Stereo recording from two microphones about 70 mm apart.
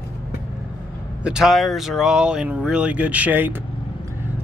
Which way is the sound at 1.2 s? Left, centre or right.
Centre.